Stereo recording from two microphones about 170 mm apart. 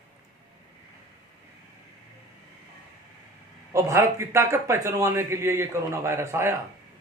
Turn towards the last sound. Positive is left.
turn(degrees=-15)  # may be behind; listen again after turning